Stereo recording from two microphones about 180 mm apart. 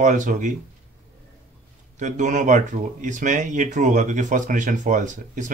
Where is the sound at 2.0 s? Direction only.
40° right (ahead or behind).